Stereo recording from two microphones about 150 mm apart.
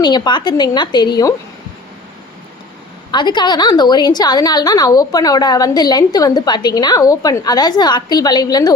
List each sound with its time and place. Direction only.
0.0 s a woman's voice: 30° left (ahead or behind)
3.1 s a woman's voice: 30° left (ahead or behind)